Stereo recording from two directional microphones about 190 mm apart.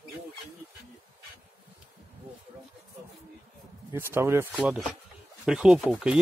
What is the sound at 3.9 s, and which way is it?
Speech, 10° right (ahead or behind).